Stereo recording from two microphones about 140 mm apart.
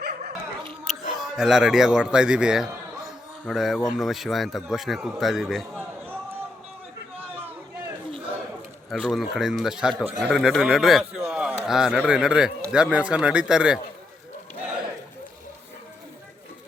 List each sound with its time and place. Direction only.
0.9 s a man's voice: centre (ahead or behind)
8.9 s a man's voice: centre (ahead or behind)